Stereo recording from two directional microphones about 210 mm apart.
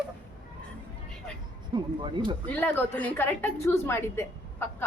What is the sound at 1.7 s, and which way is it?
Speech, 20° right (ahead or behind).